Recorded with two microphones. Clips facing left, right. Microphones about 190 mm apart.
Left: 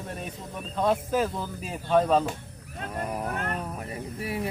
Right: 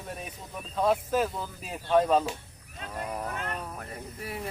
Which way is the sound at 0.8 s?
Centre (ahead or behind).